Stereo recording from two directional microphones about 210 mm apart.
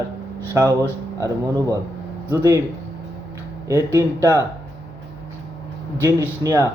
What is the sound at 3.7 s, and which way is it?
Speech, 15° right (ahead or behind).